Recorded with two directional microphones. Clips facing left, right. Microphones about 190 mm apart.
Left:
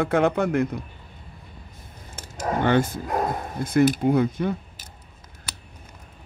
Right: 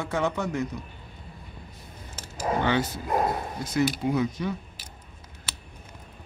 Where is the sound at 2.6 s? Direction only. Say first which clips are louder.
Left 5 dB; 50° left (ahead or behind).